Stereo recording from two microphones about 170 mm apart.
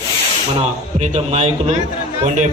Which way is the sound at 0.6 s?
40° right (ahead or behind).